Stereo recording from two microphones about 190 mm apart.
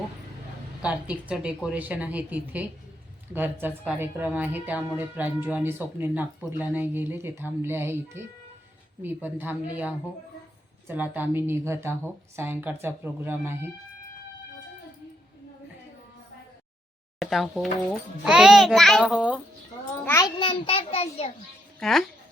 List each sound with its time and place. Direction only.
0.8 s a woman's voice: 5° right (ahead or behind)
17.2 s a child's voice: centre (ahead or behind)
20.1 s a child's voice: 15° left (ahead or behind)
20.4 s a child's voice: 30° left (ahead or behind)
21.8 s speech: centre (ahead or behind)